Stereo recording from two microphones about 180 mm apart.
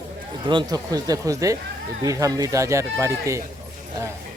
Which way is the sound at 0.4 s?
25° right (ahead or behind).